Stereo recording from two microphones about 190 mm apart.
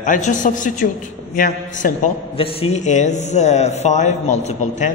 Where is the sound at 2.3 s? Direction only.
30° left (ahead or behind).